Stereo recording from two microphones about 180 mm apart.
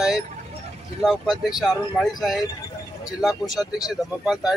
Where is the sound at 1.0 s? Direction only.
Centre (ahead or behind).